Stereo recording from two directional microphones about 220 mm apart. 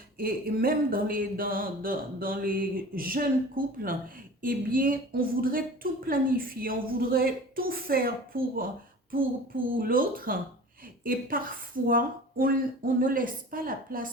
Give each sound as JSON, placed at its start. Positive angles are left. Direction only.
{"t": 0.2, "sound": "a woman's voice", "side_deg": -40}
{"t": 9.7, "sound": "speech", "side_deg": -40}